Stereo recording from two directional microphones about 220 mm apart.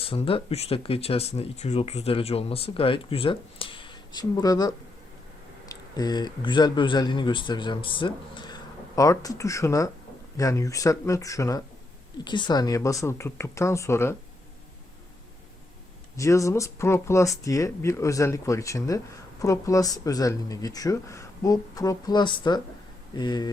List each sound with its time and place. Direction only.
0.0 s speech: 25° left (ahead or behind)
16.1 s speech: 15° left (ahead or behind)